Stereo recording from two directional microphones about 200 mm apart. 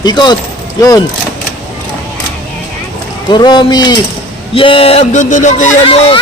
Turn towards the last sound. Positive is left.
turn(degrees=25)  # may be behind; listen again after turning